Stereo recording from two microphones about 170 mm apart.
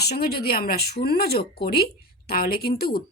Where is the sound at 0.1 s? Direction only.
65° left (ahead or behind).